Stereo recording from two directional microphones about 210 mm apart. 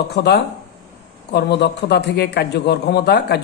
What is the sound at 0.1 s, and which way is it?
A man's voice, 50° left (ahead or behind).